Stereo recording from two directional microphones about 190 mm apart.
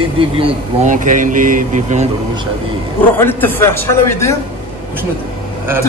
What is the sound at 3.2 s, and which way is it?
A man's voice, 10° left (ahead or behind).